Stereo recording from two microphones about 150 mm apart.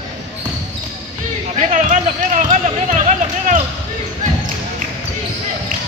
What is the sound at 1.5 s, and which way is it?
Basketball bounce, 60° right (ahead or behind).